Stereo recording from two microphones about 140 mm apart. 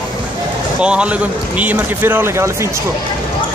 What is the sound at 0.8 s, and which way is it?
Speech, 10° right (ahead or behind).